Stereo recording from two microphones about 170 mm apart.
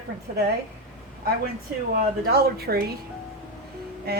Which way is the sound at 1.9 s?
65° right (ahead or behind).